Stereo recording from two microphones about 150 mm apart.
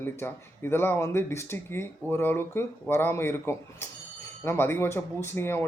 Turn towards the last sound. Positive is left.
turn(degrees=15)  # may be behind; listen again after turning